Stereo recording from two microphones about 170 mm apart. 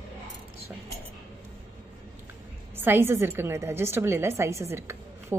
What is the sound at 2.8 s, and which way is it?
A woman's voice, 15° right (ahead or behind).